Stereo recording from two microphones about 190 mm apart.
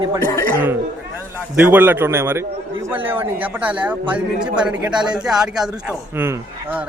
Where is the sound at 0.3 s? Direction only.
20° left (ahead or behind).